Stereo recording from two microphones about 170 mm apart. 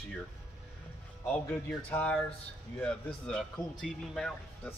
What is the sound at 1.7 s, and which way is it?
Speech, 10° left (ahead or behind).